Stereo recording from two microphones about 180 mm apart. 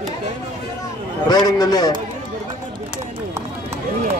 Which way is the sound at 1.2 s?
20° left (ahead or behind).